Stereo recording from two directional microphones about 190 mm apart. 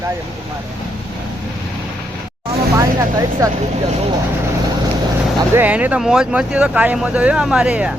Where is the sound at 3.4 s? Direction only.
20° right (ahead or behind).